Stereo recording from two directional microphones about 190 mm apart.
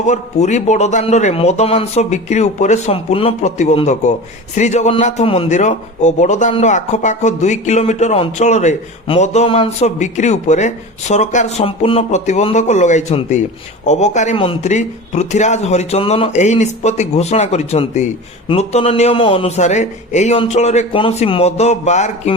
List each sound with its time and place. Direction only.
0.0 s a man's voice: 35° left (ahead or behind)